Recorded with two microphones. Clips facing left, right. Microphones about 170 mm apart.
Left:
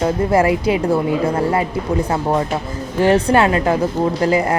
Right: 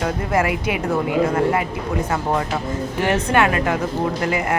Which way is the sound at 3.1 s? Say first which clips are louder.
Left 4 dB; 30° left (ahead or behind).